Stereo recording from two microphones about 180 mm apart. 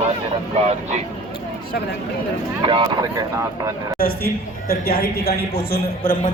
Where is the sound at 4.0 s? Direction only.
55° left (ahead or behind).